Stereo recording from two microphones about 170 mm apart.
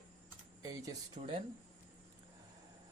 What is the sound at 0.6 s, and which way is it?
Speech, 20° right (ahead or behind).